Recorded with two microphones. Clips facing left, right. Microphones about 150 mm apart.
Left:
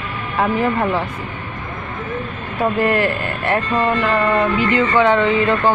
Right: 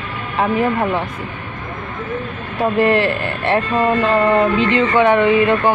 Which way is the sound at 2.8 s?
25° right (ahead or behind).